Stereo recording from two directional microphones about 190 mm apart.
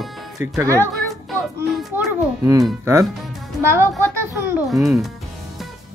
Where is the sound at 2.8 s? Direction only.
15° right (ahead or behind).